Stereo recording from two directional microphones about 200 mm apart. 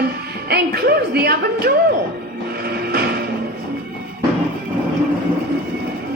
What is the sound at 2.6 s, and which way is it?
Music, 50° right (ahead or behind).